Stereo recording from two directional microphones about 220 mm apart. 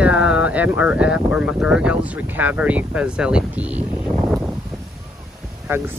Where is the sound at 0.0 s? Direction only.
5° right (ahead or behind).